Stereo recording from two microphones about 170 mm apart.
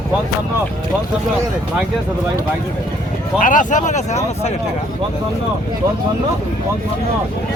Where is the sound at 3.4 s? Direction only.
50° left (ahead or behind).